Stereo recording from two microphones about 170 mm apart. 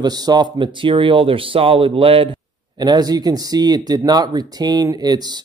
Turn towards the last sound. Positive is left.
turn(degrees=-25)  # may be behind; listen again after turning